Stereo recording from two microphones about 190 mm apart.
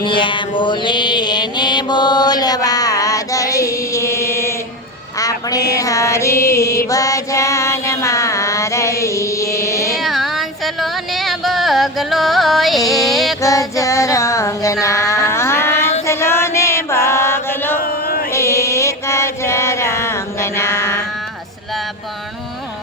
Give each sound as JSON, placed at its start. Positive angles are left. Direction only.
{"t": 0.0, "sound": "mantra", "side_deg": 25}
{"t": 5.1, "sound": "a sound", "side_deg": 20}
{"t": 5.7, "sound": "mantra", "side_deg": 15}
{"t": 9.9, "sound": "a sound", "side_deg": 0}
{"t": 13.1, "sound": "female singing", "side_deg": 0}
{"t": 13.4, "sound": "child singing", "side_deg": 15}
{"t": 16.0, "sound": "chant", "side_deg": 15}
{"t": 17.7, "sound": "chant", "side_deg": 50}
{"t": 18.3, "sound": "chant", "side_deg": 15}